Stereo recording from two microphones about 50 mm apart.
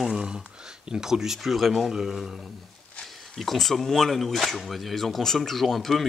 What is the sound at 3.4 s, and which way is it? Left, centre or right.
Speech, centre.